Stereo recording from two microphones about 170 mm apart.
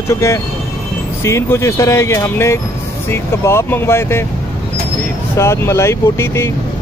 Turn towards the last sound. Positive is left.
turn(degrees=15)  # may be behind; listen again after turning